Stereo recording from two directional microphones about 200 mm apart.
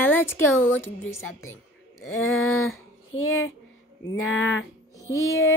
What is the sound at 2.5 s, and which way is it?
Speech, 90° left.